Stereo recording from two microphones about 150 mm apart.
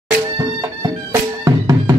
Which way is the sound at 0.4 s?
25° right (ahead or behind).